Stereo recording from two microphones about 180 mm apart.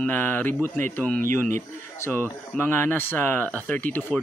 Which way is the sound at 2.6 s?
10° left (ahead or behind).